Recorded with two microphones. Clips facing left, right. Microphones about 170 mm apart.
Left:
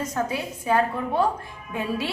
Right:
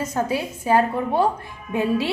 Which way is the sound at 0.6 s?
30° right (ahead or behind).